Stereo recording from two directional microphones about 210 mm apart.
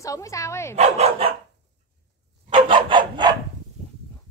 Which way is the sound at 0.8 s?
30° right (ahead or behind).